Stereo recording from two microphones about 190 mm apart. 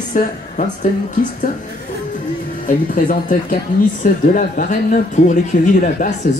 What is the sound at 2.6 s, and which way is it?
A woman's voice, 45° left (ahead or behind).